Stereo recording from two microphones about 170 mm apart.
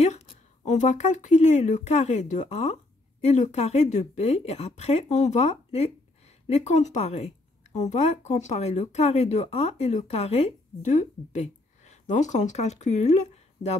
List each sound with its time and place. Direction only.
0.0 s speech: 40° left (ahead or behind)